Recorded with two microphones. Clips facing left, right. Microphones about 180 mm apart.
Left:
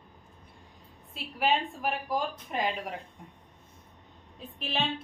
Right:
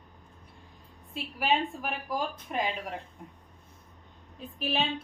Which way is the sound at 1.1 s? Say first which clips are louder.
Even; centre (ahead or behind).